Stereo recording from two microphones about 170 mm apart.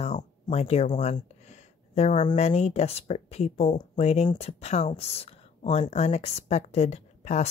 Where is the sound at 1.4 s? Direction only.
40° left (ahead or behind).